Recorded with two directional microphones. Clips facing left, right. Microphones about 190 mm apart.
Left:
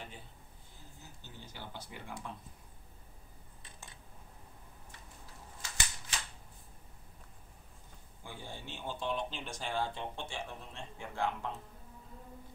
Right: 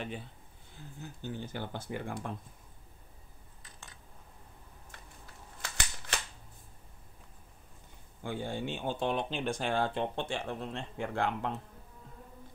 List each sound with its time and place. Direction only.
1.0 s speech: 55° right (ahead or behind)
5.6 s a sound: 60° right (ahead or behind)
8.2 s speech: 65° right (ahead or behind)